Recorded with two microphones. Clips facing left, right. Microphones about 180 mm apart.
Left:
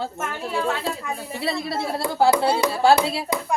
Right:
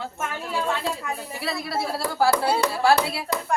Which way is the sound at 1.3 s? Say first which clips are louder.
Left 3 dB; 25° left (ahead or behind).